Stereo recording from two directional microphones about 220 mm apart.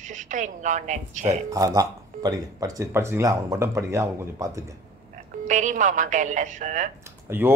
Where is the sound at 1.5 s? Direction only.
15° right (ahead or behind).